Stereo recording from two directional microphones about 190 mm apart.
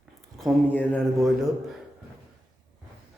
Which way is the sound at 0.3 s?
5° left (ahead or behind).